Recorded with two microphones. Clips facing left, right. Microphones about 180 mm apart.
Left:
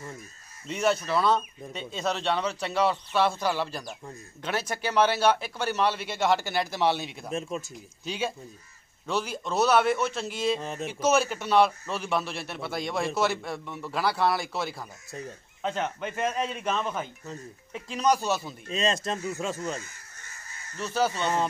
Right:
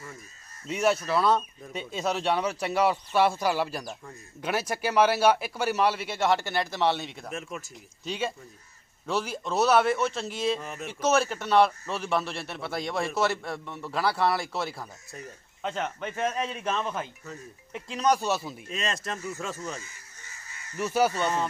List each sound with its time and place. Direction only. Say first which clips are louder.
0.7 s a man's voice: right 1 dB; 5° right (ahead or behind)
7.2 s speech: left 7 dB; 25° left (ahead or behind)
8.0 s a man's voice: even; centre (ahead or behind)
10.6 s speech: left 4 dB; 25° left (ahead or behind)
10.9 s a man's voice: even; centre (ahead or behind)
18.7 s speech: left 5 dB; 25° left (ahead or behind)
20.7 s speech: right 2 dB; 10° right (ahead or behind)